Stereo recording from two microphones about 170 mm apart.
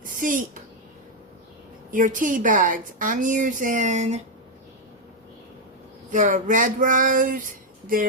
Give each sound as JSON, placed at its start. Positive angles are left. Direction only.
{"t": 0.0, "sound": "speech", "side_deg": -50}
{"t": 1.9, "sound": "a woman's voice", "side_deg": -50}
{"t": 6.1, "sound": "a woman's voice", "side_deg": -45}